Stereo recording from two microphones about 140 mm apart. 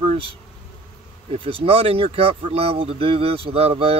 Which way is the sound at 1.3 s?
45° right (ahead or behind).